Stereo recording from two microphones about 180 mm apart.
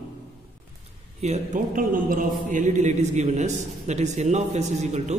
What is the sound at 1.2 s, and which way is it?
A man's voice, 40° right (ahead or behind).